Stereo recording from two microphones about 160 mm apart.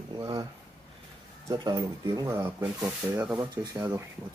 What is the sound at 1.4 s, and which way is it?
Speech, 20° right (ahead or behind).